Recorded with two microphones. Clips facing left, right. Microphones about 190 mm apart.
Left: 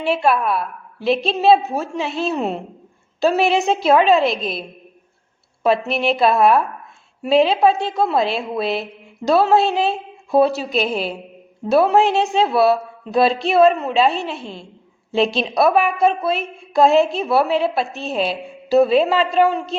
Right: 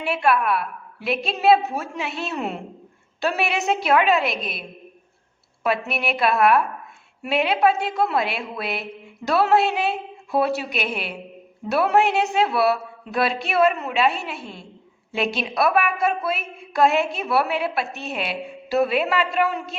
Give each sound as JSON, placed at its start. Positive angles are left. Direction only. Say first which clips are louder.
{"t": 0.0, "sound": "speech", "louder": "left 3 dB", "side_deg": 30}
{"t": 5.6, "sound": "speech", "louder": "left 6 dB", "side_deg": 30}
{"t": 15.4, "sound": "speech", "louder": "left 3 dB", "side_deg": 25}